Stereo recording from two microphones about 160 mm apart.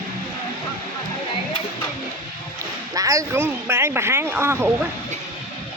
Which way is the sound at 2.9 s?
20° right (ahead or behind).